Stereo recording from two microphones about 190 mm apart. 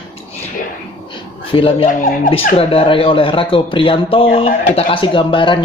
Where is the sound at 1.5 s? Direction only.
30° left (ahead or behind).